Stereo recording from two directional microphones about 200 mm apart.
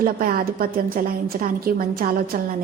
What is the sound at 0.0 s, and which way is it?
A woman's voice, 45° right (ahead or behind).